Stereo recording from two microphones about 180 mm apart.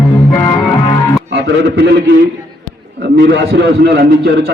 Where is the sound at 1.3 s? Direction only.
70° right (ahead or behind).